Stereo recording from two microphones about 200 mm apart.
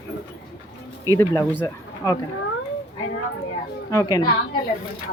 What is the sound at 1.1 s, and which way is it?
Speech, 15° left (ahead or behind).